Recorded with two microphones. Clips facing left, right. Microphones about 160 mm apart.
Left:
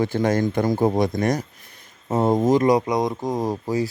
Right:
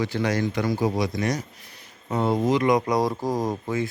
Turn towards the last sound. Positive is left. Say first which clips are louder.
# left 2 dB
turn(degrees=35)  # may be behind; listen again after turning